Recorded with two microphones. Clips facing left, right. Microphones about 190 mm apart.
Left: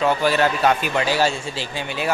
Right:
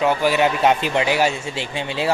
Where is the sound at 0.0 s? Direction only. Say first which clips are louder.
Right 1 dB; 15° right (ahead or behind).